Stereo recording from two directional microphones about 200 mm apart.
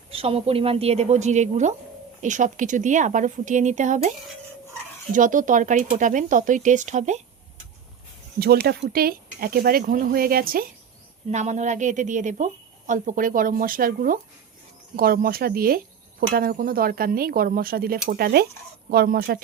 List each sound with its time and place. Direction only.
0.1 s speech: 30° right (ahead or behind)
5.1 s speech: 40° right (ahead or behind)
8.4 s speech: 50° right (ahead or behind)
11.3 s speech: 35° right (ahead or behind)